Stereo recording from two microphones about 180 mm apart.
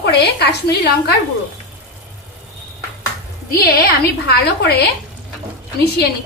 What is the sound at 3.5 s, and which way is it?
A woman's voice, 55° left (ahead or behind).